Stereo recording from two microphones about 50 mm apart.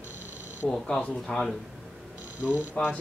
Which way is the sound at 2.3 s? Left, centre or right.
Right.